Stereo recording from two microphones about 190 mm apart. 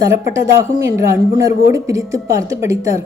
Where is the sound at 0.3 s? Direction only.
15° right (ahead or behind).